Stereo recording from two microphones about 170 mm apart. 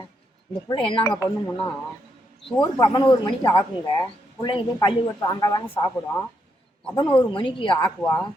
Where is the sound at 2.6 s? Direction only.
20° left (ahead or behind).